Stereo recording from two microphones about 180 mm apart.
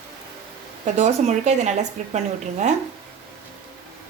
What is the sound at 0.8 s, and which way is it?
Speech, 40° right (ahead or behind).